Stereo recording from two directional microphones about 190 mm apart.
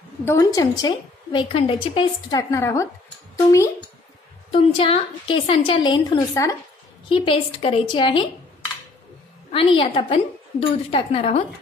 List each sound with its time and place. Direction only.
0.2 s a woman's voice: 15° left (ahead or behind)
4.5 s a woman's voice: 30° left (ahead or behind)
7.1 s a woman's voice: 30° left (ahead or behind)
9.5 s a woman's voice: 30° left (ahead or behind)